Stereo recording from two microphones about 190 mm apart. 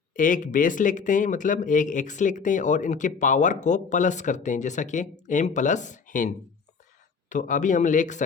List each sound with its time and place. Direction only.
0.1 s speech: 45° left (ahead or behind)